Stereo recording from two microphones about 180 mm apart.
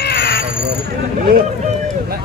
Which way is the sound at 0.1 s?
60° left (ahead or behind).